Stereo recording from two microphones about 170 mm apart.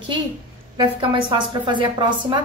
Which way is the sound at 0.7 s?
25° right (ahead or behind).